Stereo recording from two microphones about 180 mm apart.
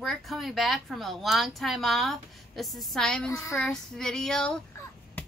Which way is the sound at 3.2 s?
15° left (ahead or behind).